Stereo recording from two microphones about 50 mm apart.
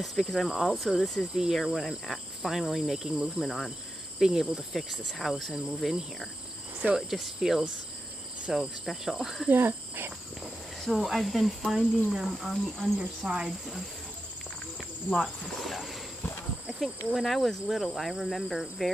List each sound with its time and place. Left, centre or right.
0.0 s insect: centre
1.3 s cricket: centre
1.6 s insect: centre
4.2 s cricket: centre
5.1 s insect: centre
7.0 s cricket: centre
8.8 s insect: centre
9.5 s speech: right
10.4 s insect: centre
15.1 s cricket: centre
16.8 s insect: centre